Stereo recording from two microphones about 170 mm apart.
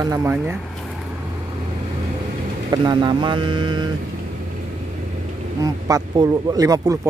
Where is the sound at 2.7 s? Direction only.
25° right (ahead or behind).